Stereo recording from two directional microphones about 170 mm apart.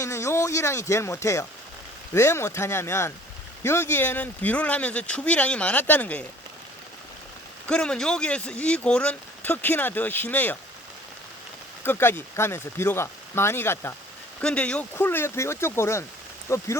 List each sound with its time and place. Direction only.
0.0 s speech: 15° left (ahead or behind)
7.7 s speech: 5° left (ahead or behind)
11.8 s speech: 15° left (ahead or behind)